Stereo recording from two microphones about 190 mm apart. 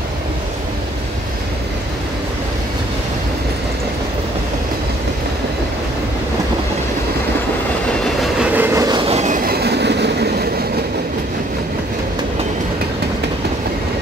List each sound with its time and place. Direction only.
8.2 s train: 5° right (ahead or behind); by 10.5 s 60° right (ahead or behind)